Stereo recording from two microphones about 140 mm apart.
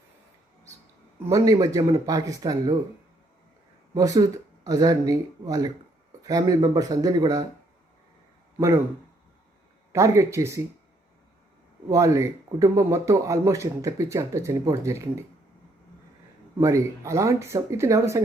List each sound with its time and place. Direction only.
1.2 s speech: 25° right (ahead or behind)
3.9 s speech: 25° right (ahead or behind)
9.9 s speech: 20° right (ahead or behind)
11.9 s speech: 20° right (ahead or behind)
16.6 s speech: 20° right (ahead or behind)